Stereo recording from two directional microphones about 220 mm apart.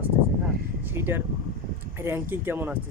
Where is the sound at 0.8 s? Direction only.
10° right (ahead or behind).